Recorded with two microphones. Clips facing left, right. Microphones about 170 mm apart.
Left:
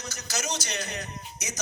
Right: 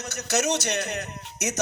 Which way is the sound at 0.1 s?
65° right (ahead or behind).